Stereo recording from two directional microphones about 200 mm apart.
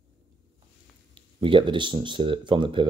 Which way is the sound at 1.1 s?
25° right (ahead or behind).